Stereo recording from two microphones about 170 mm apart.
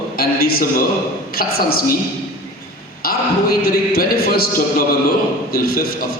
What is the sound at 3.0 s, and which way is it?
A man's voice, 60° left (ahead or behind).